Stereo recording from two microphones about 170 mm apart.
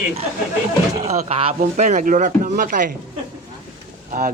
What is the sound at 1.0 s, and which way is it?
Speech, 40° right (ahead or behind).